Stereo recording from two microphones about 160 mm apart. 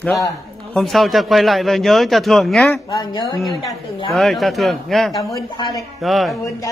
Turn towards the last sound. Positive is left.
turn(degrees=0)  # may be behind; listen again after turning